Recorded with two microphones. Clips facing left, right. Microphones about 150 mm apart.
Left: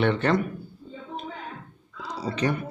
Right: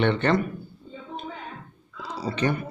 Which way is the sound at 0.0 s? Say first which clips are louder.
Right 1 dB; 5° left (ahead or behind).